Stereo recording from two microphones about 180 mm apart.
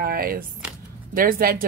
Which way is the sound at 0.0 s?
55° right (ahead or behind).